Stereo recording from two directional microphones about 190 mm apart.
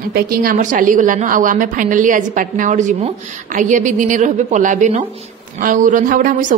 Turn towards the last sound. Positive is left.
turn(degrees=-45)  # may be behind; listen again after turning